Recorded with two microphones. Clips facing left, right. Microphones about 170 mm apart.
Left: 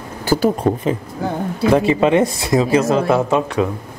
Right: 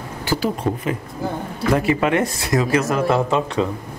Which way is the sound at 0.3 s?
40° left (ahead or behind).